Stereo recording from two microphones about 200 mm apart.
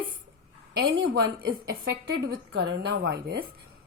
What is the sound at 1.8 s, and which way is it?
A woman's voice, 55° right (ahead or behind).